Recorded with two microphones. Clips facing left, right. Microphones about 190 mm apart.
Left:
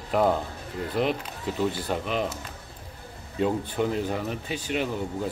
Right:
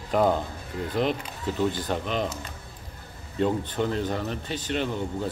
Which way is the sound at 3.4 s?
5° left (ahead or behind).